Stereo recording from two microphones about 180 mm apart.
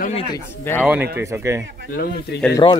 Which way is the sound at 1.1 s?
15° right (ahead or behind).